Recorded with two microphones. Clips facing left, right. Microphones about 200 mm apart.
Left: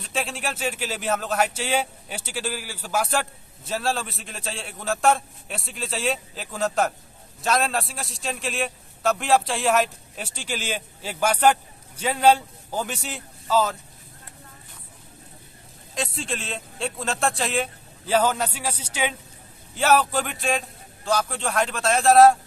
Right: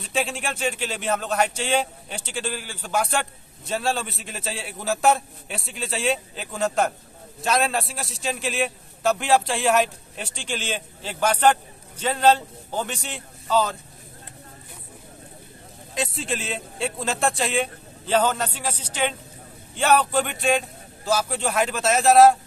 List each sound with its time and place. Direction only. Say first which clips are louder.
0.0 s a man's voice: right 2 dB; centre (ahead or behind)
15.9 s speech: right 2 dB; centre (ahead or behind)